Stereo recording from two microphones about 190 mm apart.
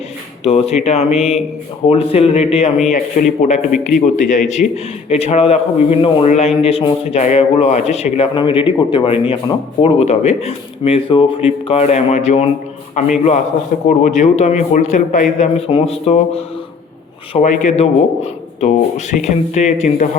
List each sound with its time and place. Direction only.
0.4 s a man's voice: 35° left (ahead or behind)